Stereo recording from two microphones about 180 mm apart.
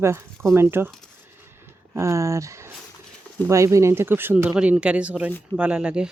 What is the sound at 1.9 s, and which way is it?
Speech, 15° right (ahead or behind).